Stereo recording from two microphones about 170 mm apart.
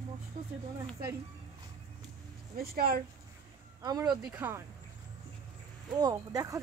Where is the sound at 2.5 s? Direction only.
60° right (ahead or behind).